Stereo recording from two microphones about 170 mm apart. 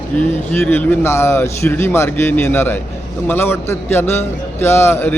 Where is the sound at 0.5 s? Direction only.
10° left (ahead or behind).